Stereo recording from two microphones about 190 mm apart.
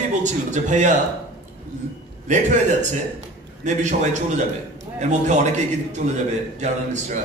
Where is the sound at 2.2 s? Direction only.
40° right (ahead or behind).